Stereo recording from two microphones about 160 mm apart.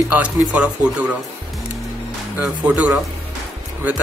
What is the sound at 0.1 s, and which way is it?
Speech, 10° right (ahead or behind).